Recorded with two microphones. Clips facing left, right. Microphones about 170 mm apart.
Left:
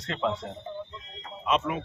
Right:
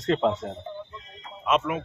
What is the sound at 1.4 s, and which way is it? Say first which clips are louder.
Speech: right 2 dB; 5° right (ahead or behind).